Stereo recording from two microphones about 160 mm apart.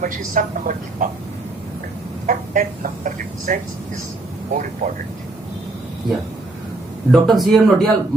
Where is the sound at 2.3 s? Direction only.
55° right (ahead or behind).